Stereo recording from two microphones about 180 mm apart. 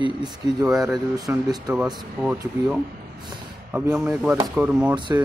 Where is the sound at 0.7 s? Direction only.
5° right (ahead or behind).